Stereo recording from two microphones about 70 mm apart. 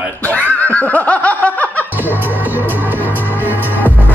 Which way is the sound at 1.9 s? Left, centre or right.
Right.